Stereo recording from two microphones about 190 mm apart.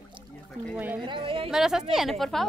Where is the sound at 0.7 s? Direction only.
10° right (ahead or behind).